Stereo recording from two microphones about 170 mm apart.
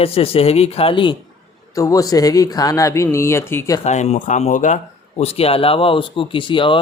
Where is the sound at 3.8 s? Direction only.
40° left (ahead or behind).